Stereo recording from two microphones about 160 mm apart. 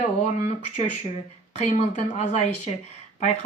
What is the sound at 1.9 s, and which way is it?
Speech, 45° left (ahead or behind).